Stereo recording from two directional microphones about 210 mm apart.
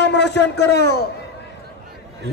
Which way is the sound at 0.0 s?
55° left (ahead or behind).